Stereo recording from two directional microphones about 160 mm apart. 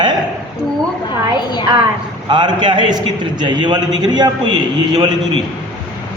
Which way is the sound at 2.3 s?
30° right (ahead or behind).